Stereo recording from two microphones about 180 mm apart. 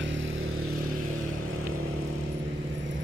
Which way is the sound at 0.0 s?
90° right.